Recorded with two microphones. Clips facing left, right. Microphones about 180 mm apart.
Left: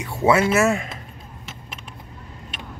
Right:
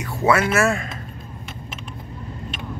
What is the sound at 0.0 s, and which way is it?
Speech, 25° left (ahead or behind).